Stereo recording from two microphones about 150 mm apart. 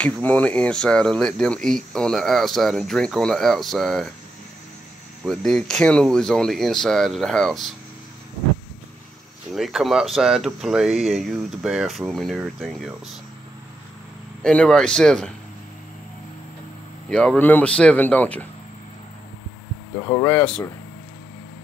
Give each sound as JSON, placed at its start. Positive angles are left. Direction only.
{"t": 0.0, "sound": "speech", "side_deg": 10}
{"t": 5.2, "sound": "speech", "side_deg": 0}
{"t": 9.5, "sound": "speech", "side_deg": 0}
{"t": 14.4, "sound": "speech", "side_deg": 5}
{"t": 17.1, "sound": "speech", "side_deg": 5}
{"t": 20.1, "sound": "speech", "side_deg": 20}